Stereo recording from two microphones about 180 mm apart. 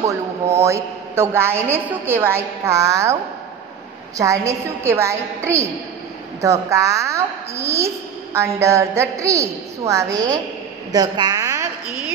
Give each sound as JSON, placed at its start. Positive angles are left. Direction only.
{"t": 0.6, "sound": "a woman's voice", "side_deg": -15}
{"t": 4.2, "sound": "a woman's voice", "side_deg": -15}